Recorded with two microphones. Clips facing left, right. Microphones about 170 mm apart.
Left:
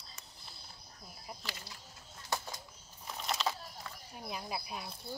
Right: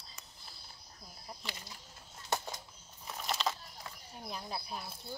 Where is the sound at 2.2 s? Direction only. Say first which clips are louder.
Right 2 dB; 20° right (ahead or behind).